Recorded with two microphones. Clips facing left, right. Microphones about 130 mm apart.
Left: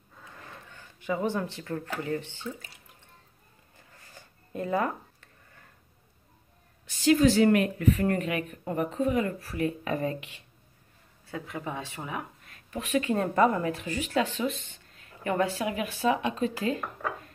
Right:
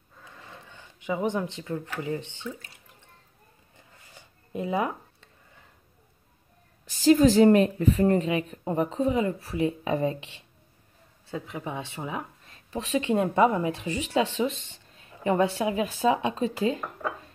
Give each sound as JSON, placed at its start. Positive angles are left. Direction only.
{"t": 0.7, "sound": "speech", "side_deg": -15}
{"t": 4.1, "sound": "a sound", "side_deg": -15}
{"t": 6.9, "sound": "a woman's voice", "side_deg": -40}
{"t": 14.1, "sound": "speech", "side_deg": -30}